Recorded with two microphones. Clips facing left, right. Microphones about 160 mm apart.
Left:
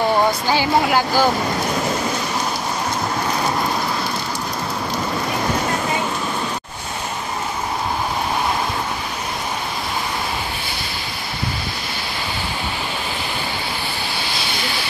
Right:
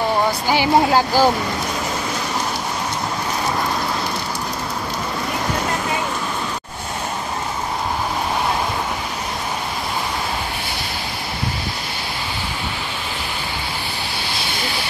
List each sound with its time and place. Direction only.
0.5 s speech: 25° right (ahead or behind)